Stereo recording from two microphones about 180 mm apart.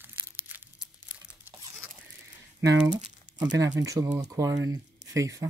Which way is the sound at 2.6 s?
20° right (ahead or behind).